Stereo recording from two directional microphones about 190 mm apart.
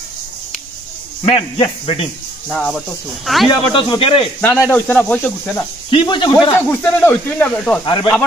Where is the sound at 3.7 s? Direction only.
25° left (ahead or behind).